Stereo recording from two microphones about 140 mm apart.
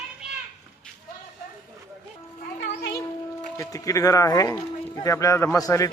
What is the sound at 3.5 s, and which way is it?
Speech, 25° left (ahead or behind).